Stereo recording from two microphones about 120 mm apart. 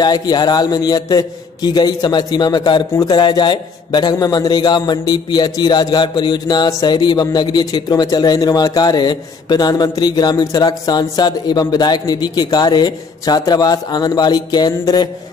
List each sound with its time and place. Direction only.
0.0 s speech: 35° left (ahead or behind)